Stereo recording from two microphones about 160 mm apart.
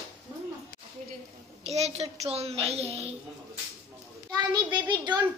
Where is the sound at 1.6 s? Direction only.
40° right (ahead or behind).